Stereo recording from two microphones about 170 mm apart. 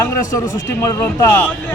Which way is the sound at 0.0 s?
20° left (ahead or behind).